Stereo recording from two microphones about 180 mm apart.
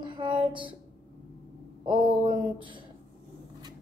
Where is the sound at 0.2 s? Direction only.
25° right (ahead or behind).